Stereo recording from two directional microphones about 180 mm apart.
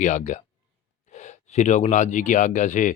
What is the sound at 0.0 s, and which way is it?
Speech, 45° left (ahead or behind).